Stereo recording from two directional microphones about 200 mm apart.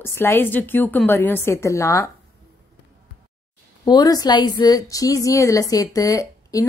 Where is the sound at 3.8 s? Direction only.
20° left (ahead or behind).